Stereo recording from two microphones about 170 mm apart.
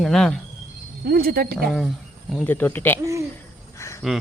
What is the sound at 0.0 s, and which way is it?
Speech, centre (ahead or behind).